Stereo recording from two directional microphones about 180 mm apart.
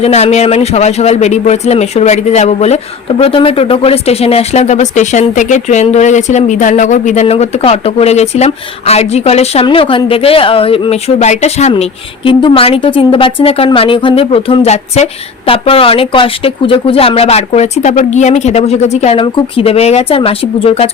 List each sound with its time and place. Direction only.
0.0 s a man's voice: 35° left (ahead or behind)